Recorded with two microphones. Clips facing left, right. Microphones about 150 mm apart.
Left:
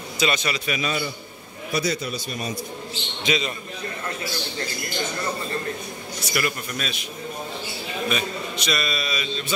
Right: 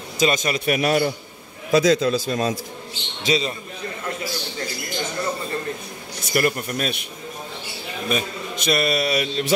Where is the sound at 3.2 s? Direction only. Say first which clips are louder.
Right 3 dB; 35° right (ahead or behind).